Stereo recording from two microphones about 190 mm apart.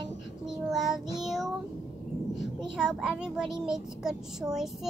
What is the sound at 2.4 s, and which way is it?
A child's voice, 5° right (ahead or behind).